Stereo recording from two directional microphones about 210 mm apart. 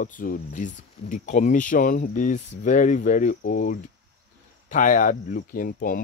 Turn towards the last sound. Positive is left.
turn(degrees=40)  # may be behind; listen again after turning